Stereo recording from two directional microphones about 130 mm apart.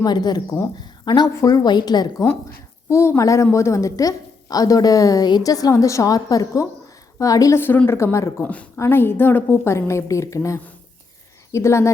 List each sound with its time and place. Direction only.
0.0 s speech: 30° left (ahead or behind)
2.9 s a woman's voice: 20° left (ahead or behind)